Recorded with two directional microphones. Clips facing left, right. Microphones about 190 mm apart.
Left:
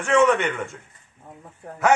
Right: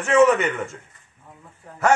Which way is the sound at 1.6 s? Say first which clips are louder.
Left 6 dB; 55° left (ahead or behind).